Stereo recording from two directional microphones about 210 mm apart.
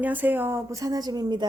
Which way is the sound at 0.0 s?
10° right (ahead or behind).